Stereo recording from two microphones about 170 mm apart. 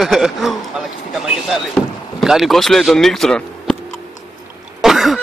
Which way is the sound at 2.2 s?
Centre (ahead or behind).